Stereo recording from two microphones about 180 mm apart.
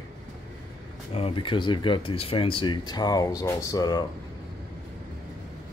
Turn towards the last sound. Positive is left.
turn(degrees=20)  # may be behind; listen again after turning